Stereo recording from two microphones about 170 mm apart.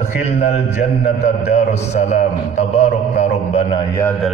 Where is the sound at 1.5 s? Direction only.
45° left (ahead or behind).